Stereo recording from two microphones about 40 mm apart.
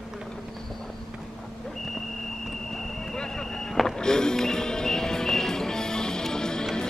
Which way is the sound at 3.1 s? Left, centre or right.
Centre.